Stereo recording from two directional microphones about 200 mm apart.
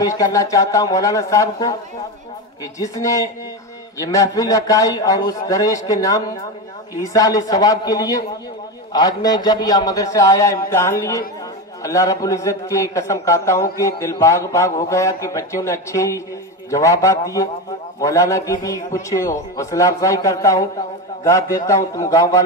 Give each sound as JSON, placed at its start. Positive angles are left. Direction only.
{"t": 0.0, "sound": "a man's voice", "side_deg": 15}
{"t": 2.8, "sound": "a man's voice", "side_deg": 15}